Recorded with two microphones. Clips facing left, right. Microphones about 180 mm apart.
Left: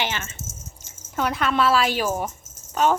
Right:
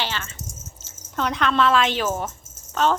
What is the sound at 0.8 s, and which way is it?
Speech, 10° left (ahead or behind).